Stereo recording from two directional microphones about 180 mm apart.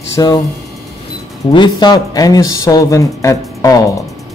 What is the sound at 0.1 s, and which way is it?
Speech, 20° left (ahead or behind).